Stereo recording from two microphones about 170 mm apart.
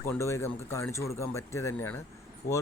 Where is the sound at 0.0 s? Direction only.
15° left (ahead or behind).